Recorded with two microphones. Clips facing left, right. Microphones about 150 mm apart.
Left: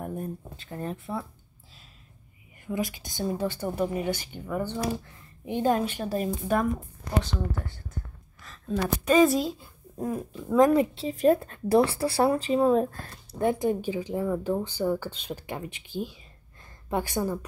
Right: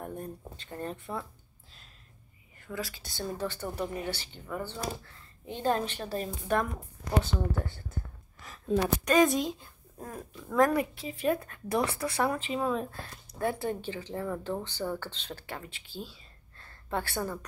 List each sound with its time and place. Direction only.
0.0 s a sound: 5° left (ahead or behind)
2.6 s speech: 15° left (ahead or behind)
9.0 s a woman's voice: 5° left (ahead or behind)
9.9 s speech: 15° left (ahead or behind)
11.1 s speech: 35° left (ahead or behind)
13.3 s speech: 20° left (ahead or behind)